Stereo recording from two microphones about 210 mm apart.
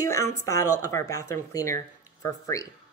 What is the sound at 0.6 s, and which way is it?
Speech, 90° left.